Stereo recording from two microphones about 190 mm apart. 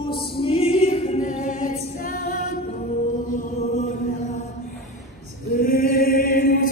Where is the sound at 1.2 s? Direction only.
45° left (ahead or behind).